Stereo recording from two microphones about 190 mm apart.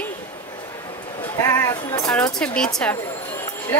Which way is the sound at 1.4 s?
15° left (ahead or behind).